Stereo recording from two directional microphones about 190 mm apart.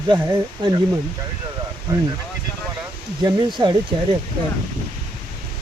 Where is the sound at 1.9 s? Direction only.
15° right (ahead or behind).